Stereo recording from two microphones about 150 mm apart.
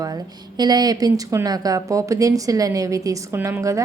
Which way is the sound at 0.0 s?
25° right (ahead or behind).